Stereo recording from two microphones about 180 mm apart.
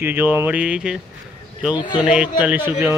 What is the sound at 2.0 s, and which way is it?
Speech, 5° right (ahead or behind).